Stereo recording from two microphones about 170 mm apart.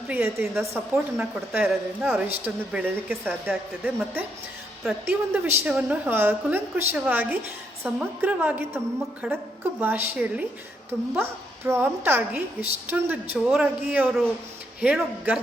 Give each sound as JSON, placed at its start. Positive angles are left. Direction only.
{"t": 0.1, "sound": "a woman's voice", "side_deg": -15}